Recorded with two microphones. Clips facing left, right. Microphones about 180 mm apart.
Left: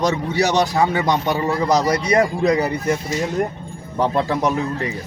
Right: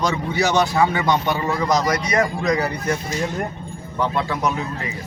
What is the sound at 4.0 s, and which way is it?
Speech, 35° left (ahead or behind).